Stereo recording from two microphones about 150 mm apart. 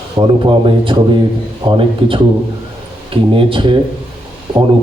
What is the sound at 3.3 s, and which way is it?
Speech, 35° right (ahead or behind).